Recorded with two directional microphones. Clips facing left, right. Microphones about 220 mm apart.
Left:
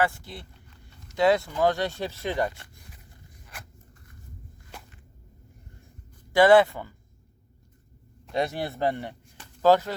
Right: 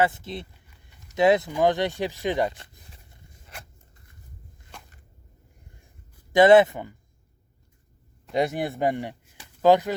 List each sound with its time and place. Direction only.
0.0 s speech: 20° right (ahead or behind)
0.7 s a sound: 20° right (ahead or behind)
6.3 s speech: 20° right (ahead or behind)
8.3 s speech: 15° right (ahead or behind)